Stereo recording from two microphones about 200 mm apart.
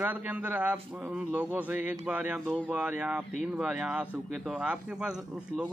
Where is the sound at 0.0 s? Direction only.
10° right (ahead or behind).